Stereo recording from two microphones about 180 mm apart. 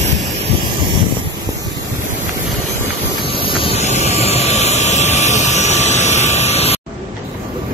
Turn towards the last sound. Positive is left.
turn(degrees=35)  # may be behind; listen again after turning